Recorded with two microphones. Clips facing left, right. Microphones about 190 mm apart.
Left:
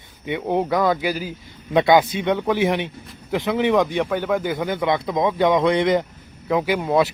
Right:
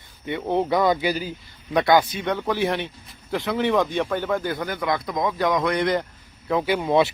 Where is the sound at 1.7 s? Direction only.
20° left (ahead or behind).